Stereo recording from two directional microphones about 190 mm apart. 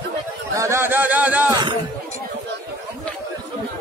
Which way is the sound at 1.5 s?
25° right (ahead or behind).